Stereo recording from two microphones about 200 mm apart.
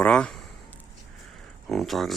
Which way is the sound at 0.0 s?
5° left (ahead or behind).